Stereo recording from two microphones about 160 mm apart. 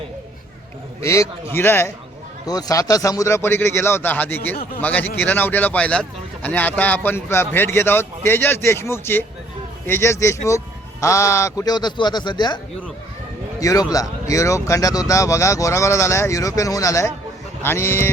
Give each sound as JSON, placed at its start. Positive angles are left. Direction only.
{"t": 1.0, "sound": "speech", "side_deg": 20}
{"t": 13.6, "sound": "speech", "side_deg": 20}